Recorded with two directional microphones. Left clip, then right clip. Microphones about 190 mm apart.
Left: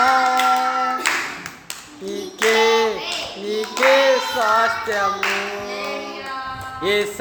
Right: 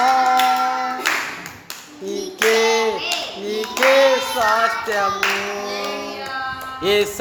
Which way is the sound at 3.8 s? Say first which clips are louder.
Even; 25° right (ahead or behind).